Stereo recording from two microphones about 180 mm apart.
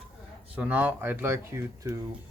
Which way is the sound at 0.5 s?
10° right (ahead or behind).